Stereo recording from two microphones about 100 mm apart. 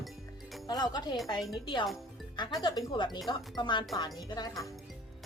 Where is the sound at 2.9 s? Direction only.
50° left (ahead or behind).